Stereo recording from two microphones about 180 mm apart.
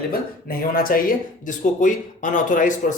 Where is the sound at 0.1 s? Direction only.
55° left (ahead or behind).